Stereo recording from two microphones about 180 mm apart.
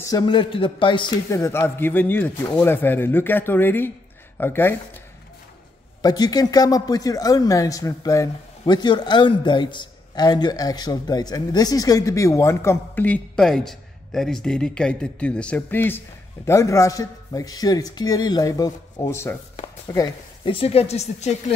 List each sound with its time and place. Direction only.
0.0 s a man's voice: 20° left (ahead or behind)
6.0 s speech: 20° left (ahead or behind)
20.5 s speech: 35° left (ahead or behind)